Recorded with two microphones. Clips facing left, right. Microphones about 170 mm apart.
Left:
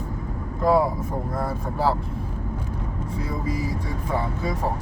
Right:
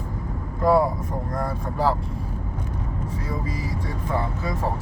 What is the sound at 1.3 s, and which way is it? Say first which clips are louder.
Speech: even; 5° left (ahead or behind).